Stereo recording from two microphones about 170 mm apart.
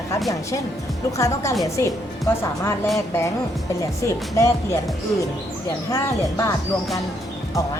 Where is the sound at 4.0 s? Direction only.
15° left (ahead or behind).